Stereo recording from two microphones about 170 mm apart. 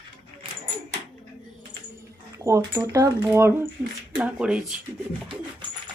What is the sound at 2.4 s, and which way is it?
Speech, 15° right (ahead or behind).